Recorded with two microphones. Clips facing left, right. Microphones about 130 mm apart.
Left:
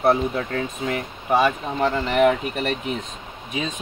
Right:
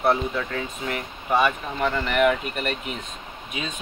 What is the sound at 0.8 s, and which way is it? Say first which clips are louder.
Speech: left 3 dB; 25° left (ahead or behind).